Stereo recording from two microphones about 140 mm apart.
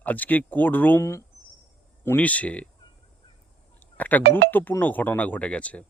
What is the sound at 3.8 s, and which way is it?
Speech, 10° left (ahead or behind).